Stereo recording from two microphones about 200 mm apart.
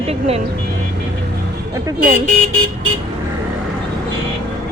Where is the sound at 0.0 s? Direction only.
30° right (ahead or behind).